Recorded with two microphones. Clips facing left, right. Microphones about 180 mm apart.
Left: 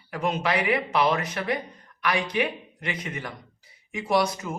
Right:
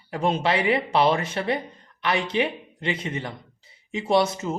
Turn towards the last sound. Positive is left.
turn(degrees=-25)  # may be behind; listen again after turning